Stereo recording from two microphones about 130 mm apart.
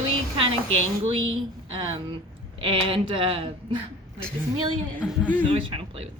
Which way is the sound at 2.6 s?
45° right (ahead or behind).